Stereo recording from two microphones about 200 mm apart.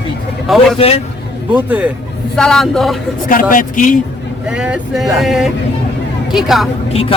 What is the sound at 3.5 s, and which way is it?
Speech, 40° left (ahead or behind).